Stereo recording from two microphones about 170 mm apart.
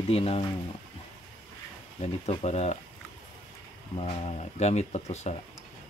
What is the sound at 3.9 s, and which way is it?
Speech, 35° left (ahead or behind).